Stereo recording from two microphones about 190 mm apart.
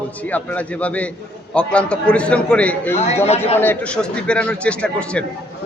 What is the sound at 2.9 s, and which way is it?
Speech, 35° left (ahead or behind).